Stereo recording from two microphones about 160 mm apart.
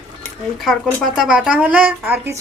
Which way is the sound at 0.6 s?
Centre (ahead or behind).